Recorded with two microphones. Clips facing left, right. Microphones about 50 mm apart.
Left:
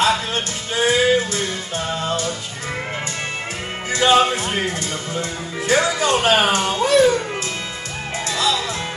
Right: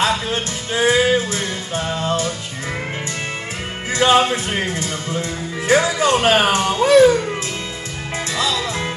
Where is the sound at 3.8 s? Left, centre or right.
Right.